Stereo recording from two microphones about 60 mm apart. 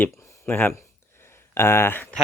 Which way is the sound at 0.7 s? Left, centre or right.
Left.